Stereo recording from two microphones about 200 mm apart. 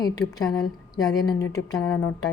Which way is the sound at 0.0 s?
20° left (ahead or behind).